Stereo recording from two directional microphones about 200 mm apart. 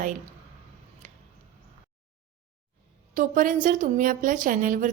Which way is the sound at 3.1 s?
40° right (ahead or behind).